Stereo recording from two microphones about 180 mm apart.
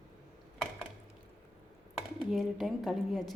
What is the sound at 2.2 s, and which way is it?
A woman's voice, centre (ahead or behind).